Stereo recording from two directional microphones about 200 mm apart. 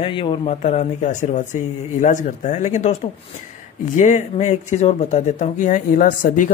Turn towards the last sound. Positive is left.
turn(degrees=40)  # may be behind; listen again after turning